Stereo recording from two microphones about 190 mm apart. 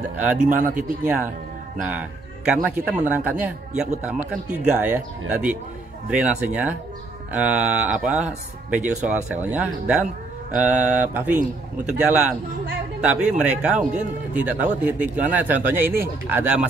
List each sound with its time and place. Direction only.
0.1 s speech: 5° right (ahead or behind)
0.5 s speech: 45° right (ahead or behind)
0.7 s speech: 10° right (ahead or behind)